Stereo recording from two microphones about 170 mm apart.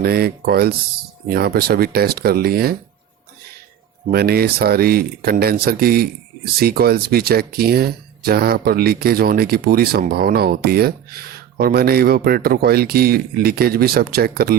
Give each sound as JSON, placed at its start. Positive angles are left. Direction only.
{"t": 0.0, "sound": "speech", "side_deg": -65}
{"t": 4.1, "sound": "speech", "side_deg": -65}